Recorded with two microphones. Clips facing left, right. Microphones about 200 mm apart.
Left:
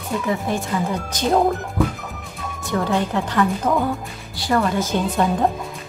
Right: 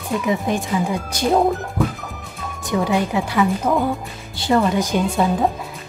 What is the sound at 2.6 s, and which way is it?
Speech, 15° right (ahead or behind).